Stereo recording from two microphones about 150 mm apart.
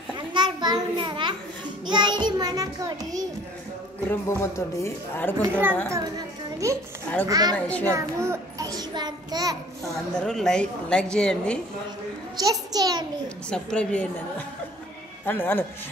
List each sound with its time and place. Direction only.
0.1 s a sound: 30° right (ahead or behind)
1.9 s child singing: 30° right (ahead or behind)
4.1 s speech: 15° left (ahead or behind)
5.5 s a woman's voice: 15° right (ahead or behind)
5.9 s a sound: 20° right (ahead or behind)
7.2 s a child's voice: 25° right (ahead or behind)
7.5 s speech: 10° left (ahead or behind)
7.9 s child singing: 20° right (ahead or behind)
9.9 s a woman's voice: 5° left (ahead or behind)
12.4 s a child's voice: 25° right (ahead or behind)
13.5 s speech: 5° left (ahead or behind)
15.2 s speech: 15° left (ahead or behind)